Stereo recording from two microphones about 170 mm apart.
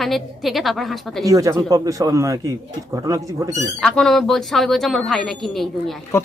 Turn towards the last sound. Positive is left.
turn(degrees=15)  # may be behind; listen again after turning